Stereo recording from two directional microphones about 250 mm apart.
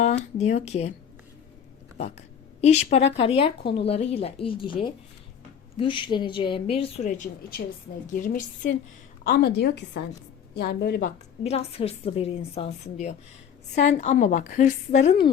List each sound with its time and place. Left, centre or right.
0.0 s a woman's voice: left
2.0 s a woman's voice: left
11.4 s a woman's voice: left